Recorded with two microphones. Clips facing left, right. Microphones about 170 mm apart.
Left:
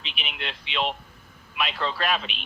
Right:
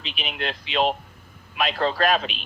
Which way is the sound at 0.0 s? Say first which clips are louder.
Right 6 dB; 40° right (ahead or behind).